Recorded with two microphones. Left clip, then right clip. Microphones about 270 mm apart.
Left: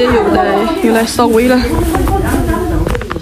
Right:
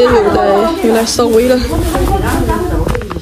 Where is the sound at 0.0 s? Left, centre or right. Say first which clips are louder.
Right 2 dB; centre.